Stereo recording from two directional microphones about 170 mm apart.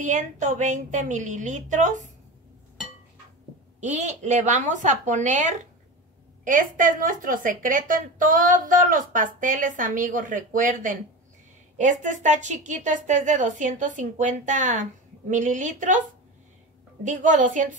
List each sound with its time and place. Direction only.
0.0 s a woman's voice: 45° right (ahead or behind)
3.8 s a woman's voice: 45° right (ahead or behind)
17.0 s a woman's voice: 45° right (ahead or behind)